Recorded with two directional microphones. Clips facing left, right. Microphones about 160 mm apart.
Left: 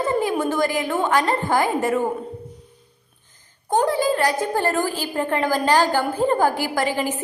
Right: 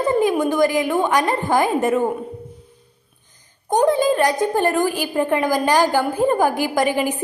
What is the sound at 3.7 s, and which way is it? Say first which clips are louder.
A woman's voice: right 3 dB; 20° right (ahead or behind).